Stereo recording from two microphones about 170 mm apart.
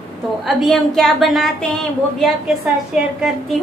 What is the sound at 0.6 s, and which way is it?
A woman's voice, centre (ahead or behind).